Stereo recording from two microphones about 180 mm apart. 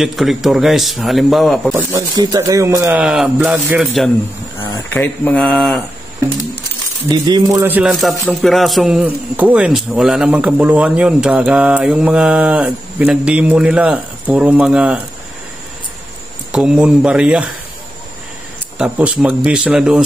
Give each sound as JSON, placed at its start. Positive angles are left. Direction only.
{"t": 0.0, "sound": "a man's voice", "side_deg": 0}
{"t": 1.7, "sound": "speech", "side_deg": -15}
{"t": 3.1, "sound": "a man's voice", "side_deg": -5}
{"t": 4.6, "sound": "a sound", "side_deg": 25}
{"t": 4.9, "sound": "speech", "side_deg": 10}
{"t": 7.1, "sound": "speech", "side_deg": -20}
{"t": 7.6, "sound": "a man's voice", "side_deg": -5}
{"t": 16.5, "sound": "a man's voice", "side_deg": -5}
{"t": 18.8, "sound": "a man's voice", "side_deg": -5}